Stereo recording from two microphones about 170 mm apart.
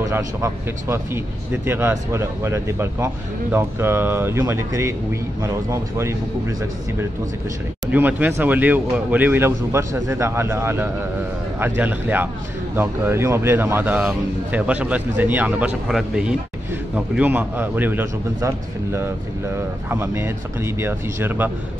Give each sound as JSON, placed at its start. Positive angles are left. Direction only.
{"t": 0.0, "sound": "a man's voice", "side_deg": -20}
{"t": 7.9, "sound": "a man's voice", "side_deg": -10}